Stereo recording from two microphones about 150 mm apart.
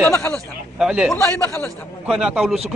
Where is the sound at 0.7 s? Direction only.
5° right (ahead or behind).